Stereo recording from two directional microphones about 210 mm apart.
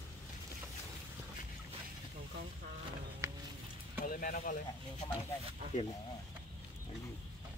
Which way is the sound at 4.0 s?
45° left (ahead or behind).